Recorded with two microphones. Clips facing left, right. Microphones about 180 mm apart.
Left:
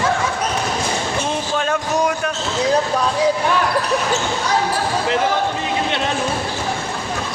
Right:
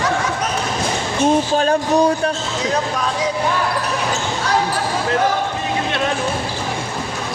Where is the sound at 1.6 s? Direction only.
35° right (ahead or behind).